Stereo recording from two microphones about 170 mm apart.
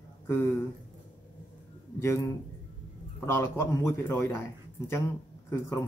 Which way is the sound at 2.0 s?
15° left (ahead or behind).